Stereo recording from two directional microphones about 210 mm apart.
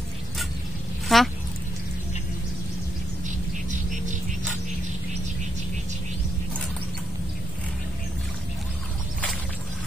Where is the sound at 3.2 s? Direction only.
35° right (ahead or behind).